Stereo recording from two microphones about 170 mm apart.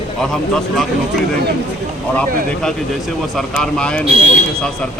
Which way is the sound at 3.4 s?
5° left (ahead or behind).